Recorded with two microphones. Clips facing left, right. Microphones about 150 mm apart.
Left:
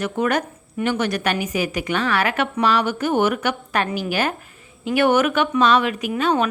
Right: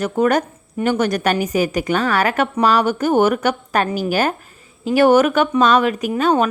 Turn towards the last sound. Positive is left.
turn(degrees=-40)  # may be behind; listen again after turning